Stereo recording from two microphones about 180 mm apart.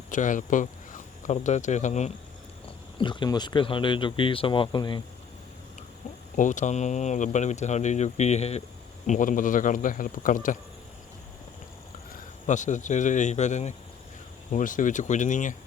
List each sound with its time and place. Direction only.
0.1 s speech: 45° left (ahead or behind)
2.6 s speech: 25° left (ahead or behind)
6.3 s a man's voice: 45° left (ahead or behind)
12.5 s a man's voice: 45° left (ahead or behind)